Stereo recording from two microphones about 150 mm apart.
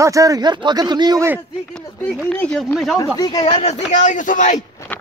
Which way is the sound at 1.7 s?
5° left (ahead or behind).